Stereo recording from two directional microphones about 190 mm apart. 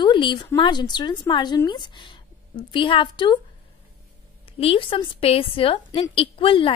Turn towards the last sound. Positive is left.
turn(degrees=30)  # may be behind; listen again after turning